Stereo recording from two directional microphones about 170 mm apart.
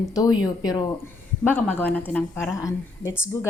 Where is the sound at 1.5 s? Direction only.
10° left (ahead or behind).